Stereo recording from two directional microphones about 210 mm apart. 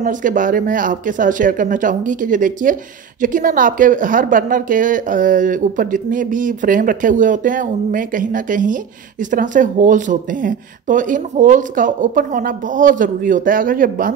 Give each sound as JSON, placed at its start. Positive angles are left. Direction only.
{"t": 0.0, "sound": "speech", "side_deg": -40}